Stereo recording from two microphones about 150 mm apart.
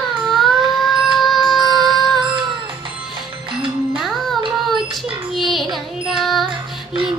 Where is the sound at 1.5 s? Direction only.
25° right (ahead or behind).